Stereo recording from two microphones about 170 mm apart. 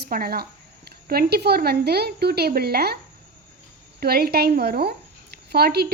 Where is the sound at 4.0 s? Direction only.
65° right (ahead or behind).